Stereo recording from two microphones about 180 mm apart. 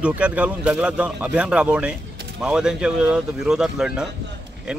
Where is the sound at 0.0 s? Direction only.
5° right (ahead or behind).